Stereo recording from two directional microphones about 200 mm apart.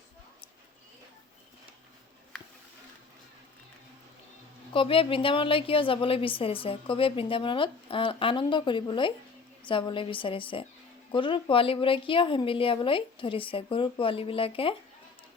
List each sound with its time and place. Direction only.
4.7 s a woman's voice: 25° left (ahead or behind)